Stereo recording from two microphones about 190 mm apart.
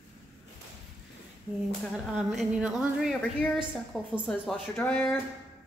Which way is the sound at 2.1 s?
5° right (ahead or behind).